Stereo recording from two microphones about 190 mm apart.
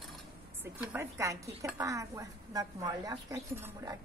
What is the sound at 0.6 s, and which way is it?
A woman's voice, 10° right (ahead or behind).